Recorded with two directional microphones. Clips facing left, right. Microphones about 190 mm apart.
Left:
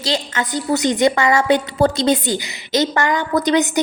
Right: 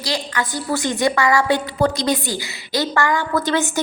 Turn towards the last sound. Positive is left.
turn(degrees=20)  # may be behind; listen again after turning